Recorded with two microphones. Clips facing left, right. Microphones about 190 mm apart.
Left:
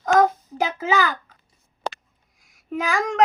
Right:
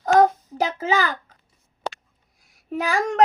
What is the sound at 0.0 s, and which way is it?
Child singing, 30° right (ahead or behind).